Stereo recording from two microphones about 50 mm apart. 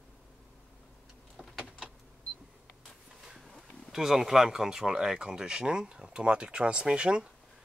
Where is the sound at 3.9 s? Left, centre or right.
Centre.